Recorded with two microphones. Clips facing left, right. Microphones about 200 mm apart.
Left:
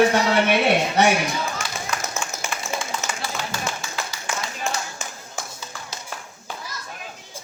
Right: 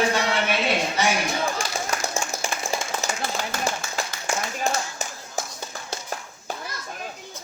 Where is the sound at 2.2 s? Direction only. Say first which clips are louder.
Right 1 dB; 40° right (ahead or behind).